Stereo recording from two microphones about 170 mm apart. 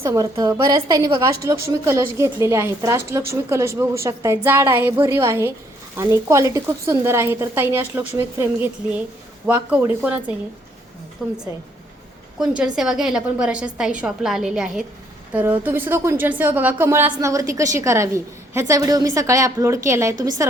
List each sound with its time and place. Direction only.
0.0 s a woman's voice: 20° right (ahead or behind); by 11.3 s centre (ahead or behind)
12.4 s a woman's voice: 5° right (ahead or behind)